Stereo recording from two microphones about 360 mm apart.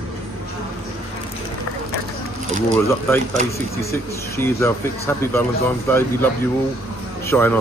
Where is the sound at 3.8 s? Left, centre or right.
Centre.